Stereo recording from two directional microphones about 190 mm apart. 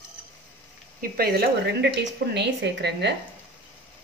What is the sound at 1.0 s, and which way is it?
A woman's voice, 50° right (ahead or behind).